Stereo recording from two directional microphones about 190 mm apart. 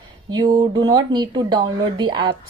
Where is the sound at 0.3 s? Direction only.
20° right (ahead or behind).